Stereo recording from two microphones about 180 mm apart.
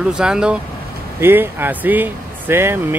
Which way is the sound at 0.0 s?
5° right (ahead or behind).